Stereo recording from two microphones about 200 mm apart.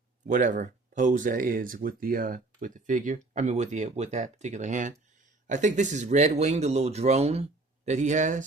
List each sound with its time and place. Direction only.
0.3 s speech: 40° right (ahead or behind)